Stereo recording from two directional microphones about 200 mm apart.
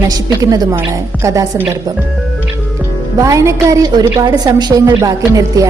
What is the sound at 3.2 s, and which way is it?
A woman's voice, 15° right (ahead or behind).